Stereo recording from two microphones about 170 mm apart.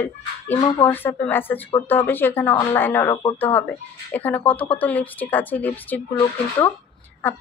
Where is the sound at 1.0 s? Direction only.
10° left (ahead or behind).